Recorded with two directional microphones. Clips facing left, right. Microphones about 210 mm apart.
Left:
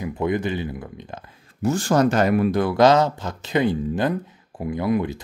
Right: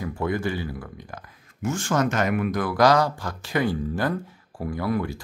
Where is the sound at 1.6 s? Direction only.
35° left (ahead or behind).